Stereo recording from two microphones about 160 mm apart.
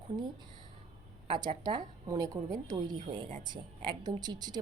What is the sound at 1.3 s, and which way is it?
Speech, 30° right (ahead or behind).